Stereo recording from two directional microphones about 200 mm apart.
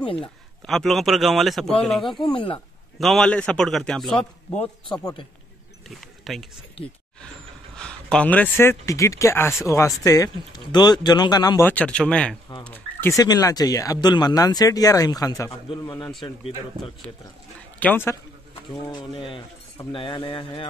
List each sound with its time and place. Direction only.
0.2 s a man's voice: centre (ahead or behind)
2.3 s speech: 25° left (ahead or behind)
3.0 s a man's voice: centre (ahead or behind)
4.9 s speech: 20° left (ahead or behind)
5.9 s a sound: centre (ahead or behind)
7.7 s speech: 5° left (ahead or behind); by 16.9 s 25° left (ahead or behind)
17.7 s a man's voice: 10° left (ahead or behind)
18.9 s speech: 20° left (ahead or behind)